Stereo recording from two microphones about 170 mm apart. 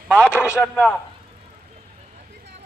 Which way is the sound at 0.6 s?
Centre (ahead or behind).